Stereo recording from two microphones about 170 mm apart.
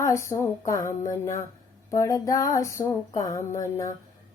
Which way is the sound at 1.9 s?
20° left (ahead or behind).